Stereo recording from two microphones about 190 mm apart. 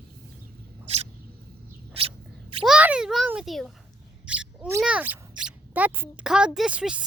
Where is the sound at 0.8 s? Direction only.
35° right (ahead or behind).